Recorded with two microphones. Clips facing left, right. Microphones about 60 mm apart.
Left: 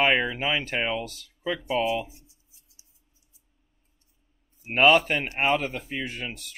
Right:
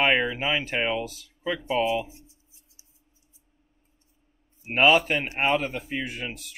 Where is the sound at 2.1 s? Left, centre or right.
Right.